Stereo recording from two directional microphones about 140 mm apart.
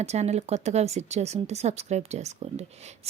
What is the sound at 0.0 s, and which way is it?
A woman's voice, 50° right (ahead or behind).